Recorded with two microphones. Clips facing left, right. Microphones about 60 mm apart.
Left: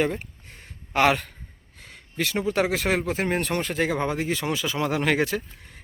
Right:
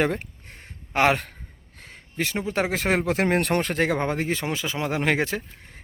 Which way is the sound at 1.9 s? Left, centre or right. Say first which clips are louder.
Even; right.